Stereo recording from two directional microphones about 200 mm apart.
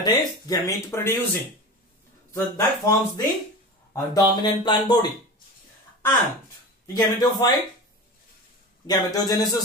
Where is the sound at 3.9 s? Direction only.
20° left (ahead or behind).